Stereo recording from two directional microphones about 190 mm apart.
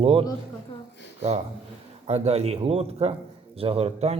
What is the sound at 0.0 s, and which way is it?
Speech, 30° right (ahead or behind).